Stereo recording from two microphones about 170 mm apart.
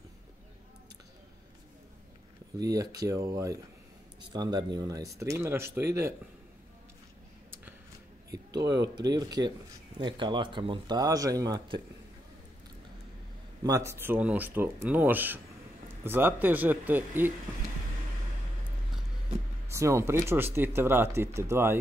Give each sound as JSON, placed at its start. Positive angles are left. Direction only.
{"t": 2.6, "sound": "speech", "side_deg": -20}
{"t": 8.5, "sound": "speech", "side_deg": -25}
{"t": 13.7, "sound": "speech", "side_deg": -15}
{"t": 19.7, "sound": "speech", "side_deg": -15}